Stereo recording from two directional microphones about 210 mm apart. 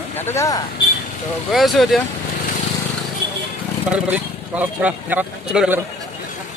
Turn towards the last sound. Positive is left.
turn(degrees=-5)  # may be behind; listen again after turning